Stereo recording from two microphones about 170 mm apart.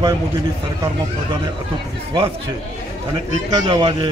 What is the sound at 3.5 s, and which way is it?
Speech, 25° right (ahead or behind).